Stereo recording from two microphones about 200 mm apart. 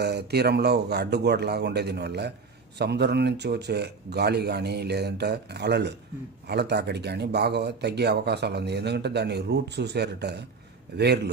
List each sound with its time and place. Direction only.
0.0 s speech: 55° right (ahead or behind)